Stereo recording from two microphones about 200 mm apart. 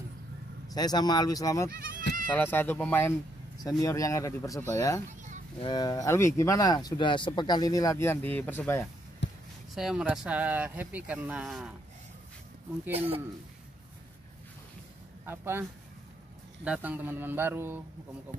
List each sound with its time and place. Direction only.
0.7 s speech: 20° left (ahead or behind)
1.7 s speech: 45° right (ahead or behind)
2.2 s speech: 10° left (ahead or behind)
9.2 s basketball bounce: 60° left (ahead or behind)
9.8 s speech: 5° right (ahead or behind)
12.9 s speech: 30° right (ahead or behind)
15.2 s speech: 10° right (ahead or behind)
16.6 s speech: 10° right (ahead or behind)